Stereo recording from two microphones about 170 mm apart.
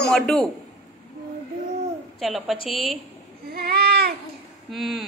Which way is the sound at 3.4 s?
65° right (ahead or behind).